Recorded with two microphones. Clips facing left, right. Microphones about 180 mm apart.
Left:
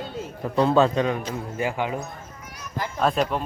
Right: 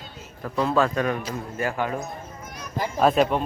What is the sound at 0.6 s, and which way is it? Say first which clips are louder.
A man's voice: left 3 dB; 25° left (ahead or behind).